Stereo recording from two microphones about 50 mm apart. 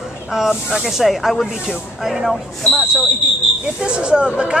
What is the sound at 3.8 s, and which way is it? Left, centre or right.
Speech, centre.